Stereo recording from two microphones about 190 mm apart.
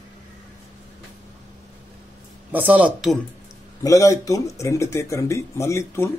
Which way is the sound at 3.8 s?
15° left (ahead or behind).